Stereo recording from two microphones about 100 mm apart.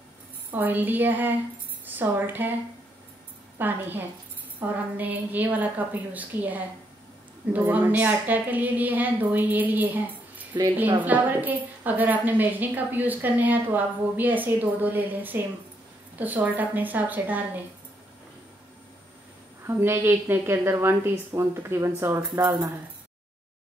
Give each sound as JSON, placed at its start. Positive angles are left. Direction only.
{"t": 0.5, "sound": "a woman's voice", "side_deg": -20}
{"t": 3.5, "sound": "a woman's voice", "side_deg": -20}
{"t": 19.6, "sound": "a woman's voice", "side_deg": -25}